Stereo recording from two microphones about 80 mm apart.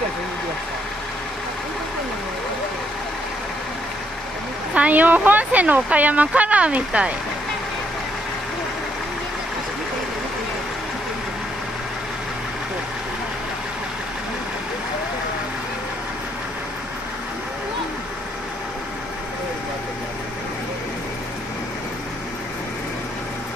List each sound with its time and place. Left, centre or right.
4.7 s speech: centre